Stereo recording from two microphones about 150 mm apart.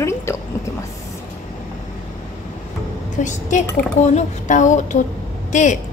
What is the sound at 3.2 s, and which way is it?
A woman's voice, 55° left (ahead or behind).